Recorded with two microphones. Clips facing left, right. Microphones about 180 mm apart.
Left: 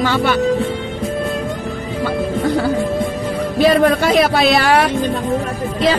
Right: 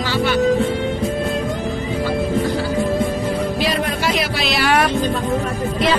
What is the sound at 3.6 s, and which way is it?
Speech, 55° left (ahead or behind).